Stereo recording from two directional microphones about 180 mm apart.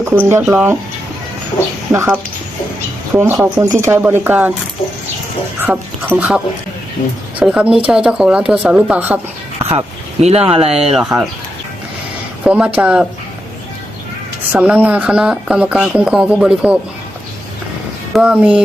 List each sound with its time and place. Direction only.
0.0 s speech: 15° right (ahead or behind)
1.9 s speech: 15° right (ahead or behind)
3.2 s speech: 15° right (ahead or behind)
5.6 s speech: 10° right (ahead or behind)
9.6 s speech: 35° right (ahead or behind)
12.5 s speech: 10° right (ahead or behind)
14.5 s speech: 10° right (ahead or behind)
18.1 s speech: 5° right (ahead or behind)